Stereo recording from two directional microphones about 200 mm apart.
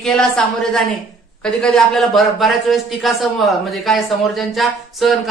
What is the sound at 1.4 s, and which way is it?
A man's voice, 5° left (ahead or behind).